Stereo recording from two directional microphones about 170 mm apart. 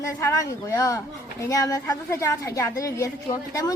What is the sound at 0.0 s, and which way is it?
Speech, 20° left (ahead or behind).